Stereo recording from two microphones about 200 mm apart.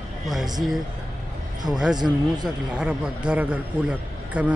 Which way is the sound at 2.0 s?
20° right (ahead or behind).